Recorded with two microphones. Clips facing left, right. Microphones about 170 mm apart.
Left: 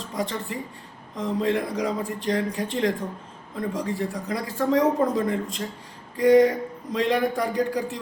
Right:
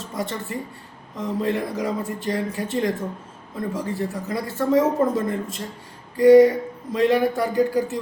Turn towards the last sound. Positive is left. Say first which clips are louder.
# right 4 dB
turn(degrees=-5)  # may be behind; listen again after turning